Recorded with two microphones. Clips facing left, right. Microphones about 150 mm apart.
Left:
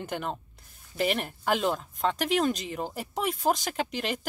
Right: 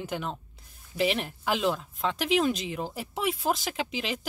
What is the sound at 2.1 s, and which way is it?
Speech, 45° left (ahead or behind).